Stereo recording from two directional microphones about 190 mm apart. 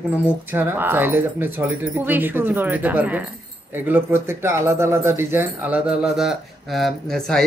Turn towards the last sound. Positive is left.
turn(degrees=5)  # may be behind; listen again after turning